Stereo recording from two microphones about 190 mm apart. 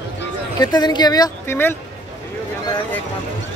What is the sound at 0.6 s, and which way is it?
Speech, 20° left (ahead or behind).